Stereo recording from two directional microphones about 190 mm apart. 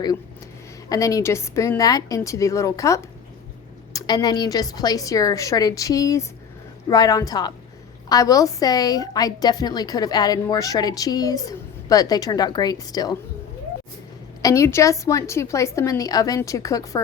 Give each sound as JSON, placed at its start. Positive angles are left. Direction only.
{"t": 0.9, "sound": "a woman's voice", "side_deg": 15}
{"t": 14.4, "sound": "a woman's voice", "side_deg": 15}